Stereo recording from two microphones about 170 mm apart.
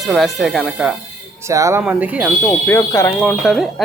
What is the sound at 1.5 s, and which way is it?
Speech, 20° right (ahead or behind).